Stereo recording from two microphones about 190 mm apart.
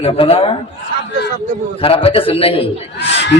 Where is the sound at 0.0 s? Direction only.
30° left (ahead or behind).